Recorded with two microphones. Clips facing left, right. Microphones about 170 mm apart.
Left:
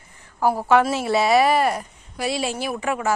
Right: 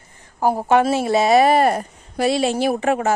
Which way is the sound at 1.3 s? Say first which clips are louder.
Right 5 dB; 50° right (ahead or behind).